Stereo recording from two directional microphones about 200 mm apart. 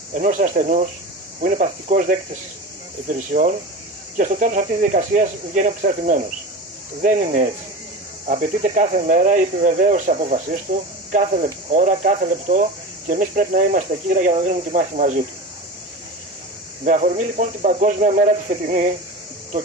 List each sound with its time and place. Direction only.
0.1 s speech: 40° right (ahead or behind)
16.8 s speech: 40° right (ahead or behind)